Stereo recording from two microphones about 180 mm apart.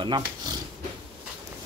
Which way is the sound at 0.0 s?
25° right (ahead or behind).